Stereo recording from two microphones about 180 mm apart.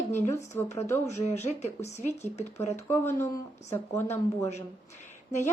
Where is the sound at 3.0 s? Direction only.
15° left (ahead or behind).